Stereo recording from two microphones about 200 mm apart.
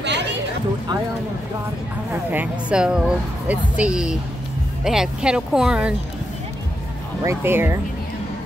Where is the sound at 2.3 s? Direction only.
5° right (ahead or behind).